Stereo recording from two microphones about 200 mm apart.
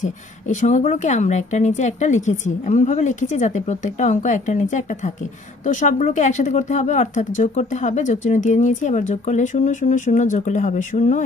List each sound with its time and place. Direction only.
0.0 s speech: 35° left (ahead or behind)